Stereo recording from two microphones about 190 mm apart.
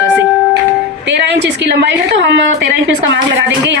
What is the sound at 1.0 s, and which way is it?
A woman's voice, 65° right (ahead or behind).